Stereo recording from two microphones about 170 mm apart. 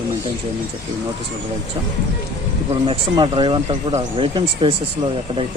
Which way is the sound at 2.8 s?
30° right (ahead or behind).